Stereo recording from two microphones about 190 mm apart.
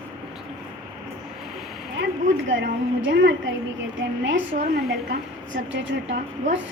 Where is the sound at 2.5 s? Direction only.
70° right (ahead or behind).